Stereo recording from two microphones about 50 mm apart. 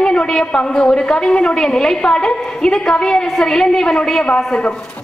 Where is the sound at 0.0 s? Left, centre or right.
Centre.